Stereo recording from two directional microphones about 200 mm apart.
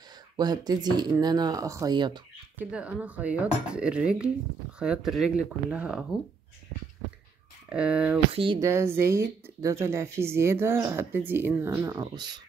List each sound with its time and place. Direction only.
0.4 s speech: 20° right (ahead or behind)
2.6 s speech: 5° right (ahead or behind)
7.7 s speech: 5° right (ahead or behind); by 12.4 s 20° right (ahead or behind)